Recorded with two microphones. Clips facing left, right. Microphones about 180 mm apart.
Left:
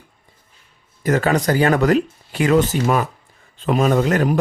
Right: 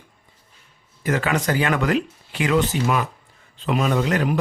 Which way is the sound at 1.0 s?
40° left (ahead or behind).